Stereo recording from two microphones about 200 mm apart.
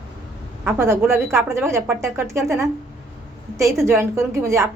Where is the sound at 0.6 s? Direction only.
10° right (ahead or behind).